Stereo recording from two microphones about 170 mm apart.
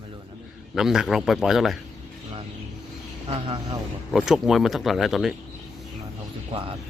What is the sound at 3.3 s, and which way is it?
Speech, 35° right (ahead or behind).